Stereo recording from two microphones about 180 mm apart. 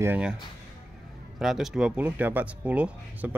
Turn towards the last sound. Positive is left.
turn(degrees=-10)  # may be behind; listen again after turning